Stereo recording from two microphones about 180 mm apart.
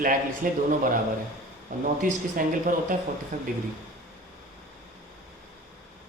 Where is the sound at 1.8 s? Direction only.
50° right (ahead or behind).